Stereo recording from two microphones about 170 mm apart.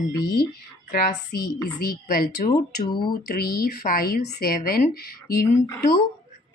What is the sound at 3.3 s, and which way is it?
Speech, 65° left (ahead or behind).